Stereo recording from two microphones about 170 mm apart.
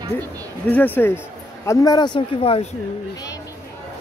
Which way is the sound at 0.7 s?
10° left (ahead or behind).